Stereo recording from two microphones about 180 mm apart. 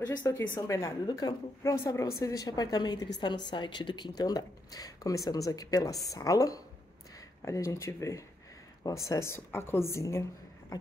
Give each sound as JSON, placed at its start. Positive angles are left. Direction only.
{"t": 0.2, "sound": "a woman's voice", "side_deg": 15}